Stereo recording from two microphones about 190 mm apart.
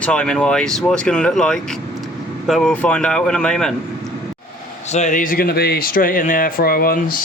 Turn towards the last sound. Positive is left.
turn(degrees=50)  # may be behind; listen again after turning